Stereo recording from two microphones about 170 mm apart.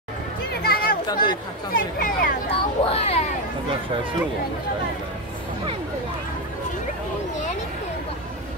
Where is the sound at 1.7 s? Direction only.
55° left (ahead or behind).